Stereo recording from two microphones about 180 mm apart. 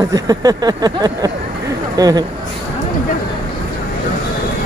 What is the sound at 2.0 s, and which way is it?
Speech, 20° right (ahead or behind).